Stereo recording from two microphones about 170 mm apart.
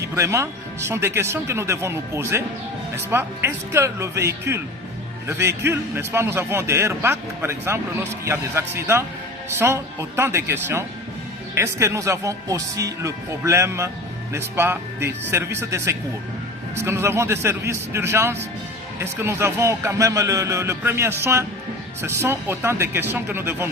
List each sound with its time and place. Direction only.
0.1 s a man's voice: 15° right (ahead or behind)